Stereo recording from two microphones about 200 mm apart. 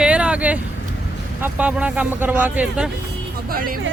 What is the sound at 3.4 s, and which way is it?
Speech, 45° right (ahead or behind).